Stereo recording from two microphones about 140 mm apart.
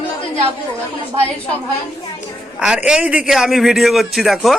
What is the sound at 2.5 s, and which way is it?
A man's voice, 5° right (ahead or behind).